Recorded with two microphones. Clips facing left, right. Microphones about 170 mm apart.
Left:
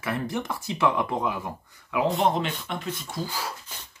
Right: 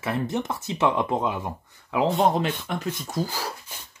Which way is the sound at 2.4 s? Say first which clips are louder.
Right 3 dB; 40° right (ahead or behind).